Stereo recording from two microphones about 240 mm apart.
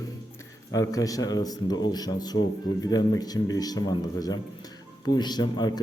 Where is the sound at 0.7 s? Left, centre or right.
Centre.